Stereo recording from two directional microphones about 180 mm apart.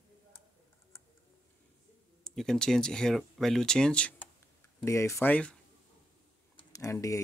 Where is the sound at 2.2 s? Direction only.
5° left (ahead or behind).